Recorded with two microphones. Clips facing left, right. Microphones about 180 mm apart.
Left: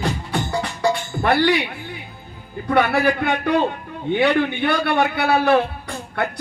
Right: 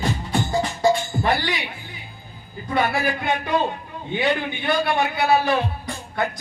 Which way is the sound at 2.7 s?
65° left (ahead or behind).